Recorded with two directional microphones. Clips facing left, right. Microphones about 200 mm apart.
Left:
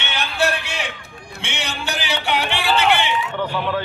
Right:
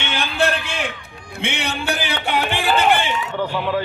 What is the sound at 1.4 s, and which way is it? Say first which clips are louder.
Music: right 5 dB; 55° right (ahead or behind).